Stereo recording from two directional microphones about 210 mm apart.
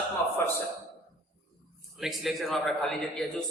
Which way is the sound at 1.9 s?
Centre (ahead or behind).